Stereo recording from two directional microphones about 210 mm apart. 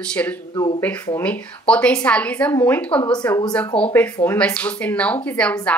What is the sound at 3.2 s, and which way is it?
Speech, 15° left (ahead or behind).